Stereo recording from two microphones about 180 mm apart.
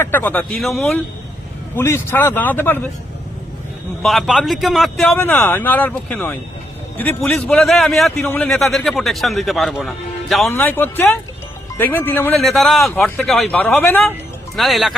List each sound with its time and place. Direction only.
0.0 s speech: 10° left (ahead or behind)
4.0 s a man's voice: centre (ahead or behind)
7.3 s a man's voice: centre (ahead or behind)
10.5 s a man's voice: 10° left (ahead or behind)